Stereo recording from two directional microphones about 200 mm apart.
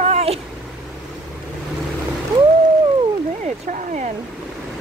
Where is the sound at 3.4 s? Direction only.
40° right (ahead or behind).